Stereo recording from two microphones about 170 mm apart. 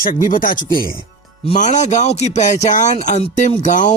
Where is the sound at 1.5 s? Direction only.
45° left (ahead or behind).